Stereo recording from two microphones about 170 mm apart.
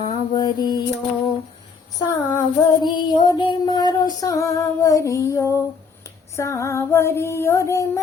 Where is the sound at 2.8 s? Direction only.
25° left (ahead or behind).